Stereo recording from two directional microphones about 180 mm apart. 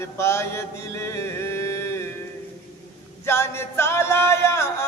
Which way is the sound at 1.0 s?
15° left (ahead or behind).